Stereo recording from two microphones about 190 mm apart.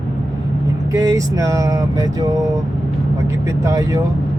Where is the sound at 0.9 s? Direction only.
15° right (ahead or behind).